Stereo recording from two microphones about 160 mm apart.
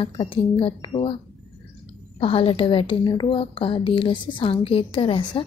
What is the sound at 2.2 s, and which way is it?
A woman's voice, 35° left (ahead or behind).